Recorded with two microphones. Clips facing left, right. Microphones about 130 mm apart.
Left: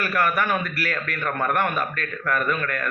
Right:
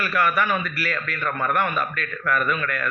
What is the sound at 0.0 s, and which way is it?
A man's voice, 50° left (ahead or behind).